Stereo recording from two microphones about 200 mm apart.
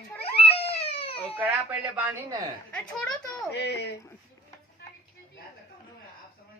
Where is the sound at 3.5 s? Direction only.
55° left (ahead or behind).